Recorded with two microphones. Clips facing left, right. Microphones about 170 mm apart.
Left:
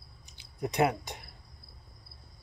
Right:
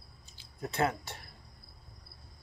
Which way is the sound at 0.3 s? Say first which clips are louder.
Left 5 dB; 15° left (ahead or behind).